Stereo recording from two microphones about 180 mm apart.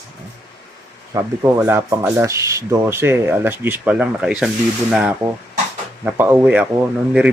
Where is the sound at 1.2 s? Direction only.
15° right (ahead or behind).